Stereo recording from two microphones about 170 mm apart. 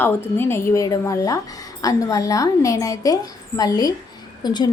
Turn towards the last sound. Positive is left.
turn(degrees=25)  # may be behind; listen again after turning